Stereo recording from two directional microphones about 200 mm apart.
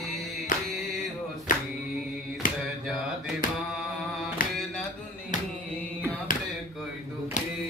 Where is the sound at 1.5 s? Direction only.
40° left (ahead or behind).